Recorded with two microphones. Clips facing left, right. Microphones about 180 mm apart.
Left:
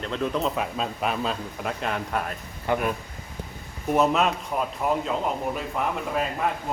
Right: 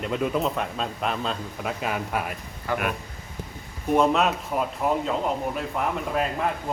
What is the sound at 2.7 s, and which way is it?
Speech, 20° left (ahead or behind).